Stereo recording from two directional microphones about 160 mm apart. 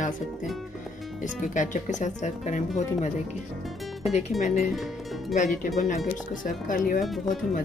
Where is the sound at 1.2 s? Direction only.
50° left (ahead or behind).